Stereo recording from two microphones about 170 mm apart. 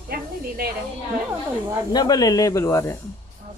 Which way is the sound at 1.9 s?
25° left (ahead or behind).